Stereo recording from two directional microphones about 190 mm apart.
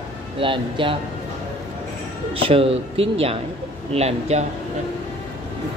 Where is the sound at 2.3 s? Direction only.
30° right (ahead or behind).